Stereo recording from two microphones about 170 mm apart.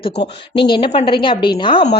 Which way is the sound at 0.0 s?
30° left (ahead or behind).